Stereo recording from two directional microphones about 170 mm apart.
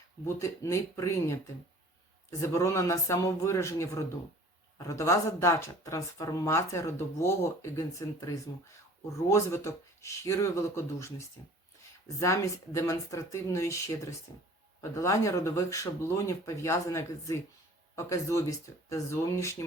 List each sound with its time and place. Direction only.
0.3 s speech: 15° left (ahead or behind)